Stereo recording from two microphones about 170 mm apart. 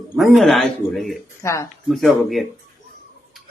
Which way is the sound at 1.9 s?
Centre (ahead or behind).